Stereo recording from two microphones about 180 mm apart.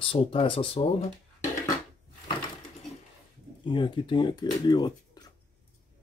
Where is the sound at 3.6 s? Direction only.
25° left (ahead or behind).